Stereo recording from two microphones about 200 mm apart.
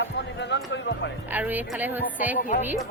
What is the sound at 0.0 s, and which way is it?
Music, 60° left (ahead or behind).